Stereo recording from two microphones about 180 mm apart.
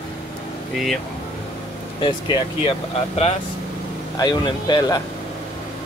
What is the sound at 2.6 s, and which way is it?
Speech, 35° left (ahead or behind).